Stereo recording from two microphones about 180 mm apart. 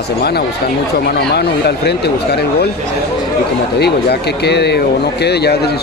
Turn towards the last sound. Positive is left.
turn(degrees=65)  # may be behind; listen again after turning